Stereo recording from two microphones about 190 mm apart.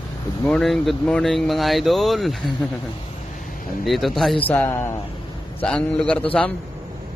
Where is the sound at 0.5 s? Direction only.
Centre (ahead or behind).